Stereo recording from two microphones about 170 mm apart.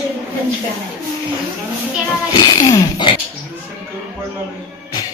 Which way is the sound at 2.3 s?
25° left (ahead or behind).